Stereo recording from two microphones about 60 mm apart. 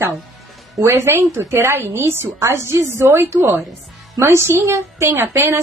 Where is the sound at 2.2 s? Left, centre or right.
Right.